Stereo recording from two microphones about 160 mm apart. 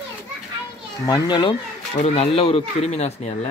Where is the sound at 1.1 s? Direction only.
25° left (ahead or behind).